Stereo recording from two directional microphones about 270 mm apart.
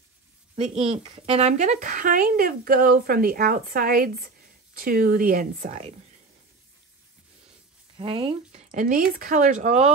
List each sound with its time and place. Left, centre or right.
0.6 s speech: right
8.0 s speech: centre